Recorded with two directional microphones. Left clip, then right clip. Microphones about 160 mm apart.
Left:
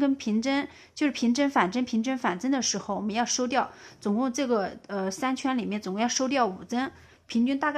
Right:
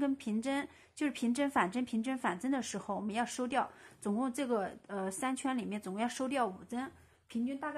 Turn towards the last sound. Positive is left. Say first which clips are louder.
# left 12 dB
turn(degrees=70)  # may be behind; listen again after turning